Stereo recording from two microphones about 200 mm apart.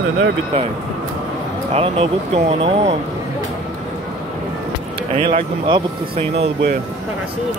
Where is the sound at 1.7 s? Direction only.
30° right (ahead or behind).